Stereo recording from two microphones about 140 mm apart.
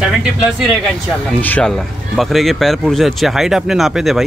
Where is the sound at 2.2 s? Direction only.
Centre (ahead or behind).